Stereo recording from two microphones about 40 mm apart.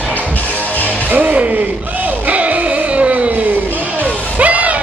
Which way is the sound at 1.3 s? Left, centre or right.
Right.